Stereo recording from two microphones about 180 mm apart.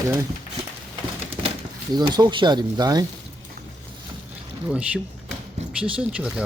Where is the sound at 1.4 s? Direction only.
25° right (ahead or behind).